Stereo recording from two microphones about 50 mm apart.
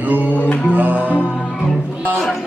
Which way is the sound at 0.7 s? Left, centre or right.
Right.